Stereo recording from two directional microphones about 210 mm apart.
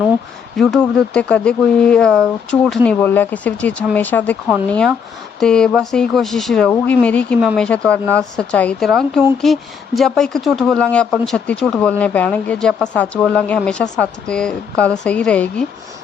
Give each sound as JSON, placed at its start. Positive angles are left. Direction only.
{"t": 0.5, "sound": "speech", "side_deg": 0}